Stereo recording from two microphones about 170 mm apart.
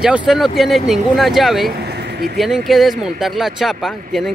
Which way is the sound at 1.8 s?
65° right (ahead or behind).